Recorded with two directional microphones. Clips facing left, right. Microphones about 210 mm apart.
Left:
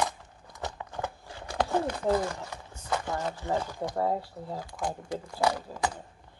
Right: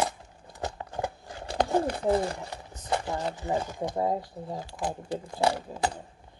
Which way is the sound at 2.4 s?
35° right (ahead or behind).